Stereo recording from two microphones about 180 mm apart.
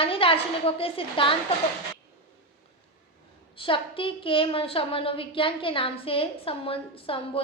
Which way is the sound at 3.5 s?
30° left (ahead or behind).